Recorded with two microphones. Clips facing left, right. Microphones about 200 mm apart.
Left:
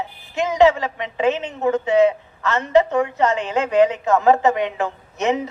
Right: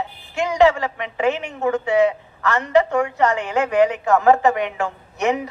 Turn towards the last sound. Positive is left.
turn(degrees=20)  # may be behind; listen again after turning